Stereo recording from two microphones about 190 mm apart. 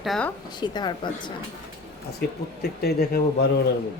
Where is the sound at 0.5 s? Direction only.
20° left (ahead or behind).